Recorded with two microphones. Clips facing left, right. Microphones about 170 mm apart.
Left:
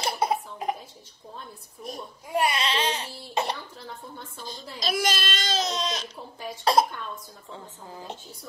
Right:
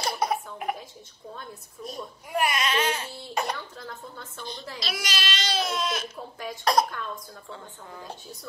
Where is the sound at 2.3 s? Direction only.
30° left (ahead or behind).